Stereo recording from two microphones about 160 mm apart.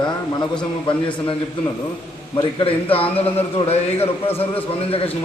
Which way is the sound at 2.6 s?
35° left (ahead or behind).